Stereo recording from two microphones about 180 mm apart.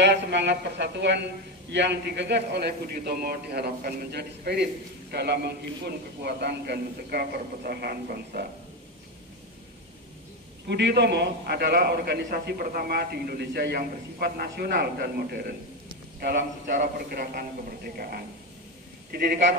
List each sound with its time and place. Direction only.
0.0 s a man's voice: 75° right (ahead or behind)
10.7 s a man's voice: 70° right (ahead or behind)